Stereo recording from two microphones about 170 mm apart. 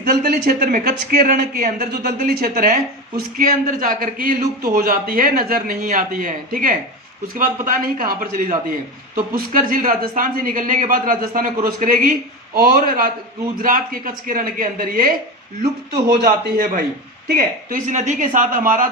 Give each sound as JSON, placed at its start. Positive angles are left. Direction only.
{"t": 0.1, "sound": "a man's voice", "side_deg": -60}
{"t": 16.0, "sound": "a man's voice", "side_deg": -70}